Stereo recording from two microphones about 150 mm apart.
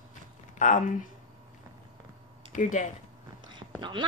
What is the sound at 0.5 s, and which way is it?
Speech, 55° left (ahead or behind).